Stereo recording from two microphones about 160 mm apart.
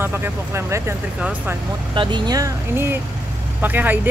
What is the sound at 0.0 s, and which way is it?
Speech, 15° right (ahead or behind).